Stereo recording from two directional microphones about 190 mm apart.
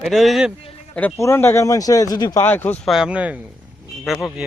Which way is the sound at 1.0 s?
10° left (ahead or behind).